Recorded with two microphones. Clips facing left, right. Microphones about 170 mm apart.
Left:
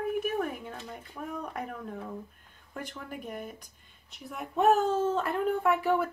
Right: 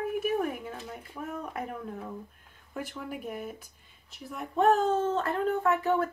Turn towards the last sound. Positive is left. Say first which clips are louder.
# even
turn(degrees=10)  # may be behind; listen again after turning